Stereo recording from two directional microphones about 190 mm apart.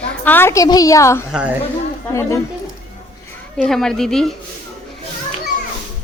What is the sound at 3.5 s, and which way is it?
Speech, centre (ahead or behind).